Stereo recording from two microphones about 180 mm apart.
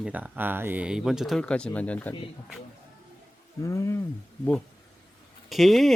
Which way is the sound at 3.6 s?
15° left (ahead or behind).